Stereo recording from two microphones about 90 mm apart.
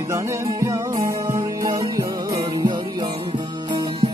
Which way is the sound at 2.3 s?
60° right (ahead or behind).